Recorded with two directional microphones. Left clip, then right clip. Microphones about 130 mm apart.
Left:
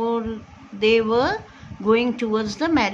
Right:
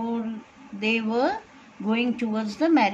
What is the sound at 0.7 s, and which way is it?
A woman's voice, 15° left (ahead or behind).